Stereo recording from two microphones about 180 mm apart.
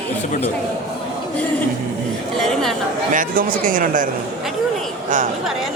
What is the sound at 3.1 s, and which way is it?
Speech, 45° right (ahead or behind).